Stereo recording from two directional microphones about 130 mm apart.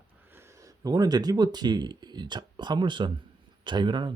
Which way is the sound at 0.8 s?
30° right (ahead or behind).